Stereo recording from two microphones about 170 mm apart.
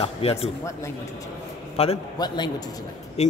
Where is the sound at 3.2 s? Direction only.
40° left (ahead or behind).